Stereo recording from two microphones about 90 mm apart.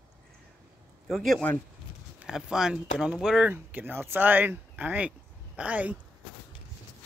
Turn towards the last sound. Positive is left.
turn(degrees=-15)  # may be behind; listen again after turning